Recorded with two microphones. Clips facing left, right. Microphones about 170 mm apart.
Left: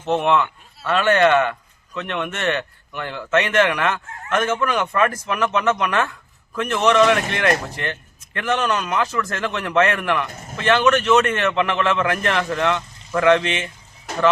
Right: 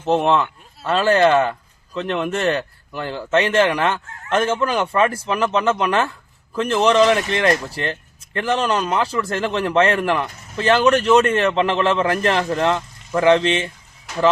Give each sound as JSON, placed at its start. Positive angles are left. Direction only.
{"t": 0.0, "sound": "speech", "side_deg": -35}